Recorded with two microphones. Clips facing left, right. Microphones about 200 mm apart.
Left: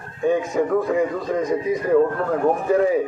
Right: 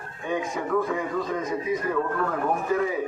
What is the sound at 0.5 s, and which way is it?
Speech, 40° left (ahead or behind).